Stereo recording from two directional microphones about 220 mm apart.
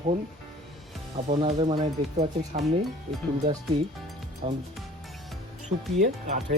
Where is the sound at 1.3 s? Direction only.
30° right (ahead or behind).